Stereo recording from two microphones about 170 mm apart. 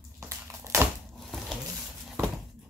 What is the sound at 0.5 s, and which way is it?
Crushing, 15° right (ahead or behind).